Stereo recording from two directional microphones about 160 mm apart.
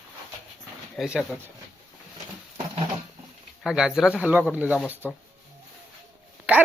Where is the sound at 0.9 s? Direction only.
5° right (ahead or behind).